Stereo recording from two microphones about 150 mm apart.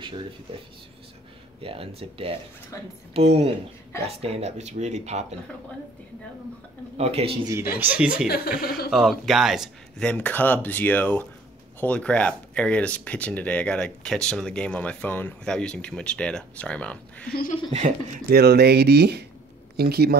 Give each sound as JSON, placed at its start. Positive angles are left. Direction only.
{"t": 1.6, "sound": "speech", "side_deg": -40}
{"t": 2.7, "sound": "speech", "side_deg": 20}
{"t": 3.1, "sound": "speech", "side_deg": -40}
{"t": 7.0, "sound": "speech", "side_deg": -40}
{"t": 7.4, "sound": "speech", "side_deg": -15}
{"t": 8.3, "sound": "speech", "side_deg": 90}
{"t": 8.9, "sound": "speech", "side_deg": 0}
{"t": 17.3, "sound": "speech", "side_deg": 75}
{"t": 17.7, "sound": "speech", "side_deg": -55}
{"t": 18.3, "sound": "speech", "side_deg": -90}